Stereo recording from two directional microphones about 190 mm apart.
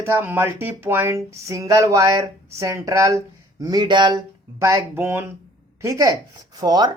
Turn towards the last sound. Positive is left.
turn(degrees=-20)  # may be behind; listen again after turning